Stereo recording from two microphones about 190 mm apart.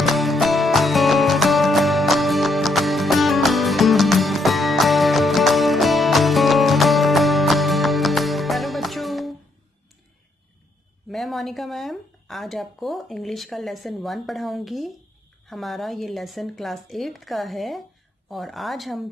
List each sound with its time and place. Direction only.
0.0 s music: centre (ahead or behind)
11.1 s speech: centre (ahead or behind)